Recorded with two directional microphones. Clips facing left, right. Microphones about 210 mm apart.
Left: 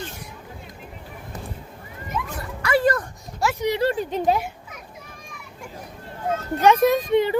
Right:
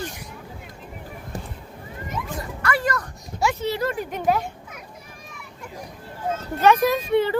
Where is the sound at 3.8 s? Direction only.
25° left (ahead or behind).